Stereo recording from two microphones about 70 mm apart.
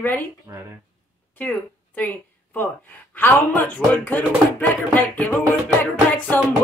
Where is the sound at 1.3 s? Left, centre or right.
Left.